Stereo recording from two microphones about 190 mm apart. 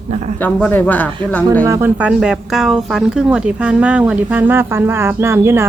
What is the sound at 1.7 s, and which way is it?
Speech, 15° right (ahead or behind).